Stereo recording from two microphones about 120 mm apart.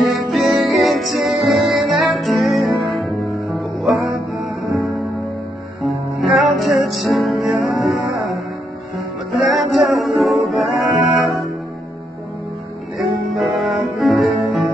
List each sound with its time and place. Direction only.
0.0 s music: centre (ahead or behind)
5.8 s music: centre (ahead or behind)
8.1 s music: 30° right (ahead or behind)
9.5 s music: centre (ahead or behind)
12.9 s music: centre (ahead or behind)